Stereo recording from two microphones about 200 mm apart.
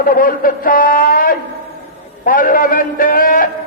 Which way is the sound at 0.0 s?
45° left (ahead or behind).